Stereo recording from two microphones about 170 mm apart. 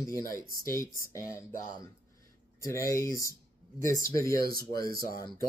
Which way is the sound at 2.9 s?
20° left (ahead or behind).